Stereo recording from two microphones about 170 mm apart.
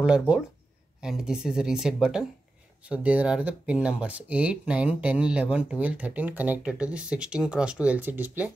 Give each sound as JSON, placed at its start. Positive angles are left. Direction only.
{"t": 0.0, "sound": "speech", "side_deg": -5}